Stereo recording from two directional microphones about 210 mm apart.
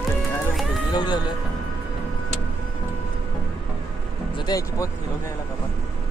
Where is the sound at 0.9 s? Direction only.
20° left (ahead or behind).